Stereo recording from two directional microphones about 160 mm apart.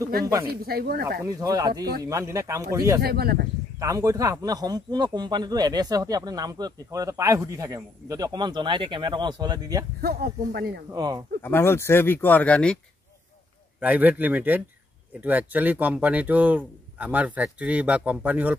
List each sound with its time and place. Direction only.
0.6 s speech: 75° right (ahead or behind)
1.2 s speech: 20° right (ahead or behind)
3.0 s speech: 75° right (ahead or behind)
3.8 s speech: 20° right (ahead or behind)
10.0 s speech: 75° right (ahead or behind)
10.9 s speech: 25° right (ahead or behind)
11.4 s speech: 15° left (ahead or behind)
13.7 s speech: 10° right (ahead or behind)